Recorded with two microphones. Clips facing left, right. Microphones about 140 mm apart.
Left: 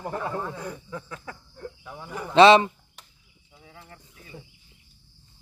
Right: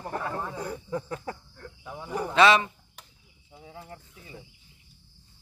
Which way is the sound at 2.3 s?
25° left (ahead or behind).